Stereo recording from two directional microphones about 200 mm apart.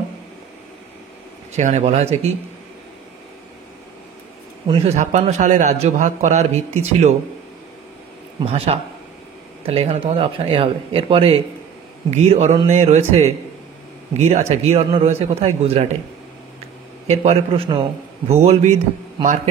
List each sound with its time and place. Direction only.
1.6 s a man's voice: 35° right (ahead or behind)
4.6 s speech: 25° right (ahead or behind)
4.9 s a man's voice: 35° right (ahead or behind)
8.4 s a man's voice: 30° right (ahead or behind)
17.1 s a man's voice: 30° right (ahead or behind)